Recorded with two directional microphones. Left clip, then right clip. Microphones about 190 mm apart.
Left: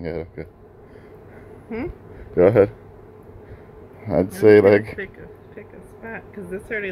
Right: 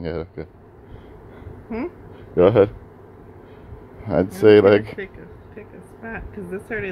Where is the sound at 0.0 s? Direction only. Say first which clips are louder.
Right 1 dB; centre (ahead or behind).